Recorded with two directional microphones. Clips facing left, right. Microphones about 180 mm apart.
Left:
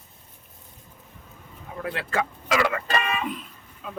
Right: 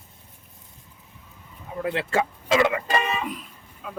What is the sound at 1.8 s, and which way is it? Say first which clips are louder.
Speech: right 3 dB; 25° right (ahead or behind).